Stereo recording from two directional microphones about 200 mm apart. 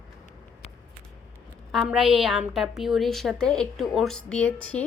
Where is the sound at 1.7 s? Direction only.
Centre (ahead or behind).